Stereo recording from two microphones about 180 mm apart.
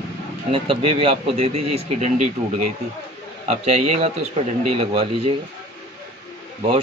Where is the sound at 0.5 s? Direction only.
30° right (ahead or behind).